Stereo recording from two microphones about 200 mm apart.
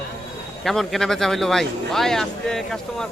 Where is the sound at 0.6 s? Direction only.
Centre (ahead or behind).